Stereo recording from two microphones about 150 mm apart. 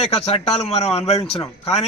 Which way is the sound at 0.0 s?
45° left (ahead or behind).